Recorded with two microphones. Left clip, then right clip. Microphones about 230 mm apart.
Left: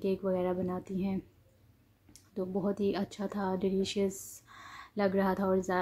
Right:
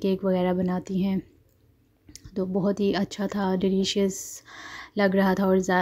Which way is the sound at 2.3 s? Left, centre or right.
Right.